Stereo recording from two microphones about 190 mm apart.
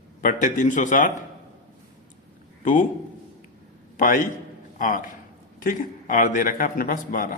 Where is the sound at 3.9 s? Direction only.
45° left (ahead or behind).